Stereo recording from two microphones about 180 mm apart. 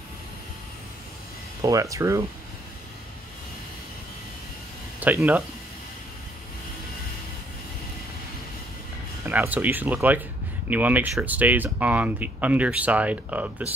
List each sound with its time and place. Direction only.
1.6 s speech: 20° right (ahead or behind)
5.0 s speech: 10° right (ahead or behind)
9.2 s speech: 10° right (ahead or behind)